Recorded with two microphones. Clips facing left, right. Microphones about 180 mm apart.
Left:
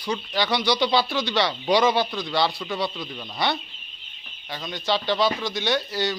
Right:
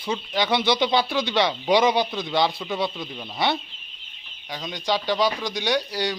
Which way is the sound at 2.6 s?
10° right (ahead or behind).